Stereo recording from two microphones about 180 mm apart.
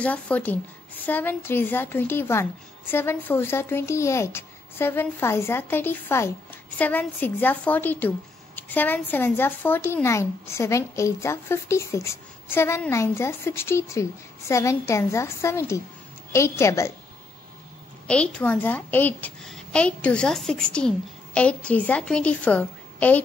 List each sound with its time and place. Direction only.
0.0 s speech: 10° left (ahead or behind)
18.0 s speech: 5° left (ahead or behind)